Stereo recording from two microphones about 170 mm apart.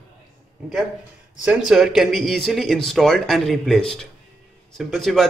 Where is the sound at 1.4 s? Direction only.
5° right (ahead or behind).